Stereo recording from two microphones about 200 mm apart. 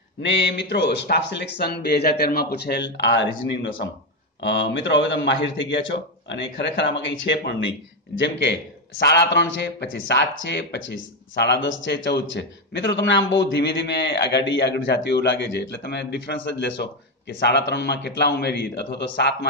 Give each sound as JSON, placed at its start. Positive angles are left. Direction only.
{"t": 0.2, "sound": "a man's voice", "side_deg": 60}